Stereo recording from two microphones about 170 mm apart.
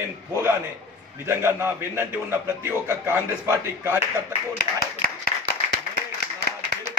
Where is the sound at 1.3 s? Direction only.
15° right (ahead or behind).